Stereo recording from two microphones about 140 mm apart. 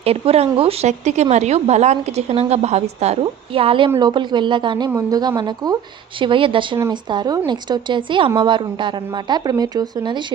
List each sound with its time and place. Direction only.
0.0 s a woman's voice: 45° right (ahead or behind)